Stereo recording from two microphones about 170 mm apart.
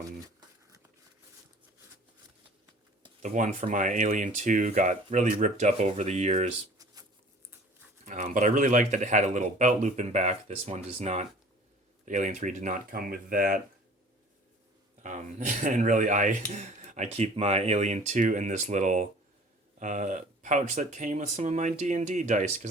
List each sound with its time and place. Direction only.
3.2 s speech: 45° right (ahead or behind)
8.0 s speech: 45° right (ahead or behind)
15.0 s speech: 45° right (ahead or behind)